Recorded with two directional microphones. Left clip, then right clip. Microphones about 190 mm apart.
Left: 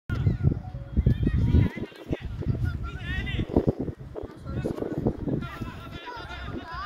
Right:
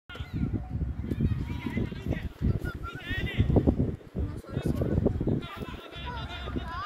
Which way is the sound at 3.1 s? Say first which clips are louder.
Left 1 dB; 20° left (ahead or behind).